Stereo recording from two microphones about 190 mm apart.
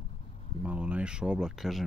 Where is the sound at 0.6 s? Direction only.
5° right (ahead or behind).